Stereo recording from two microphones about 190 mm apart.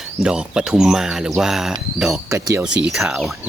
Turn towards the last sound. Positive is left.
turn(degrees=0)  # may be behind; listen again after turning